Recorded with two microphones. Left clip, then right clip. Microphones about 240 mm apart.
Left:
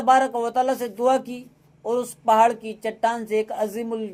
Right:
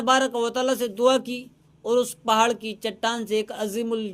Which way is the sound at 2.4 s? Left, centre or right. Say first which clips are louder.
Left 3 dB; right.